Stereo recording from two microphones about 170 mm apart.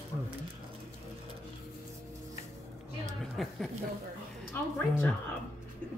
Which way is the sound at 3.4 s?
Centre (ahead or behind).